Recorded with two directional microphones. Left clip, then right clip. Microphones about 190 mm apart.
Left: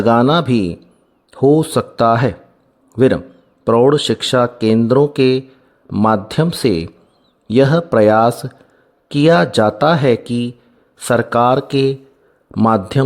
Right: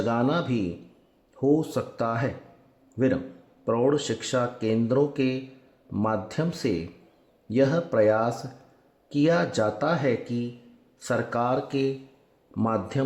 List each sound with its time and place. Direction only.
0.0 s a man's voice: 55° left (ahead or behind)